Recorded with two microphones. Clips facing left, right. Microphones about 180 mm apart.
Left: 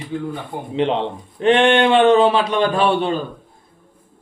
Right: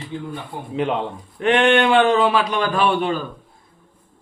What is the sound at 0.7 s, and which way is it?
Speech, 25° left (ahead or behind).